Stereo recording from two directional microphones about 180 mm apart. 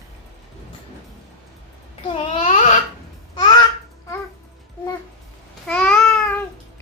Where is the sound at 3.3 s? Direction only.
25° left (ahead or behind).